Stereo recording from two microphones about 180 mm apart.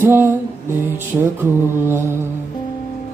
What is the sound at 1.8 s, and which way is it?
Music, 15° right (ahead or behind).